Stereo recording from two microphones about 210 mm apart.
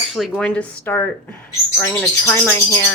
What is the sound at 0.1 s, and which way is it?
Speech, centre (ahead or behind).